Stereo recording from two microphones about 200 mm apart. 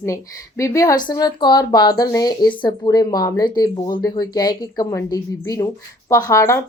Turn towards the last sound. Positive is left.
turn(degrees=15)  # may be behind; listen again after turning